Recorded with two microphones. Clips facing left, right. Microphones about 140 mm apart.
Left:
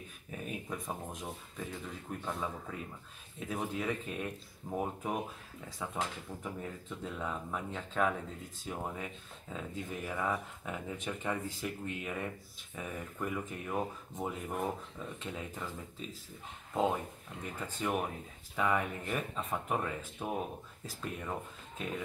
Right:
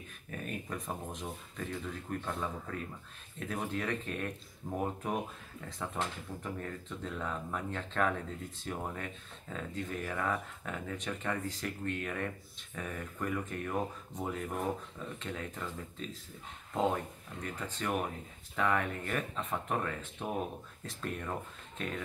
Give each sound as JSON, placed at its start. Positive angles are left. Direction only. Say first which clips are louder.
{"t": 0.3, "sound": "speech", "louder": "right 1 dB", "side_deg": 5}